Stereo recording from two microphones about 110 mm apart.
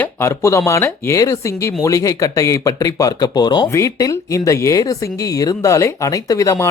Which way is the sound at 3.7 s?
30° left (ahead or behind).